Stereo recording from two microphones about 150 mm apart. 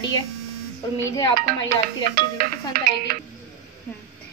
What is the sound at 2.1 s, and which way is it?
Music, 80° right.